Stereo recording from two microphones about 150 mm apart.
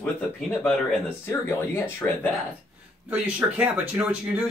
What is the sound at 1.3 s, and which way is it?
Speech, 15° left (ahead or behind).